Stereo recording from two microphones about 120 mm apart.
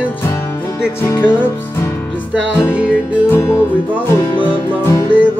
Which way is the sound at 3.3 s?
20° left (ahead or behind).